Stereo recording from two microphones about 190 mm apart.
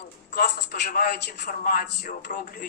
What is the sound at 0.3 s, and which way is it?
A man's voice, 50° left (ahead or behind).